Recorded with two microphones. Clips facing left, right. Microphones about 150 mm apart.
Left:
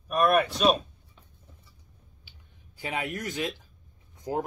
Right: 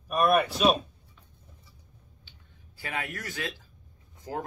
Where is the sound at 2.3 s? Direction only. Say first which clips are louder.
Left 2 dB; 10° left (ahead or behind).